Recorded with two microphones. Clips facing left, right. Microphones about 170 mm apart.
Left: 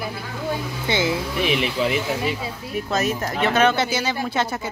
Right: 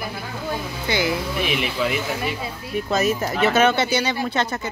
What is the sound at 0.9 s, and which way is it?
Speech, 25° left (ahead or behind).